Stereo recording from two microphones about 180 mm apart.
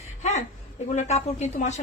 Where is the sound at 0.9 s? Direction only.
40° left (ahead or behind).